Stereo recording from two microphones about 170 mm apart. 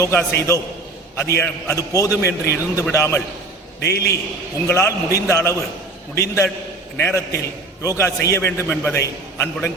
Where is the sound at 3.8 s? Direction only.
70° left (ahead or behind).